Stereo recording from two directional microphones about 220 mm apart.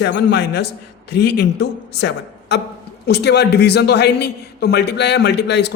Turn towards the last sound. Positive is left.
turn(degrees=50)  # may be behind; listen again after turning